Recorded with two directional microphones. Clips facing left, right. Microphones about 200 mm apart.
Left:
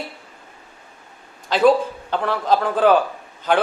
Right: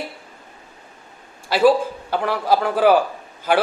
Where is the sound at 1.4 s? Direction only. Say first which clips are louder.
Even; 10° right (ahead or behind).